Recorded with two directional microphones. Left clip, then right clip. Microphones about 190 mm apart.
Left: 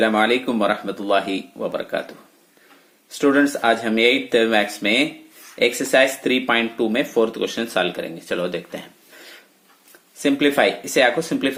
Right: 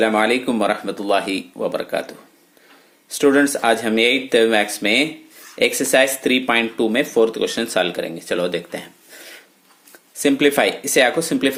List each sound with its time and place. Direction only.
0.0 s speech: 15° right (ahead or behind)